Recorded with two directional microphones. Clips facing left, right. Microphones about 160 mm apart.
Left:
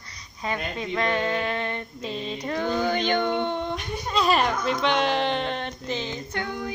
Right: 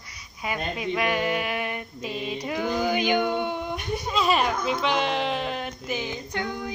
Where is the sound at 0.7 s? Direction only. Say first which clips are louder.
Even; 10° right (ahead or behind).